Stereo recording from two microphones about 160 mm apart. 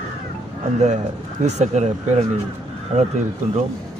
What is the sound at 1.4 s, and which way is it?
Speech, 45° right (ahead or behind).